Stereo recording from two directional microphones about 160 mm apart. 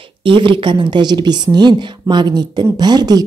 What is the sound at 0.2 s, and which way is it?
A woman's voice, 30° right (ahead or behind).